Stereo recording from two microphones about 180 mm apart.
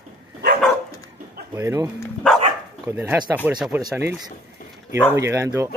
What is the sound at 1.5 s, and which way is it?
Speech, 15° right (ahead or behind).